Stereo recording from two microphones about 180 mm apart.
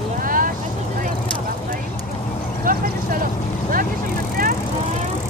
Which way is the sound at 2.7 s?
50° right (ahead or behind).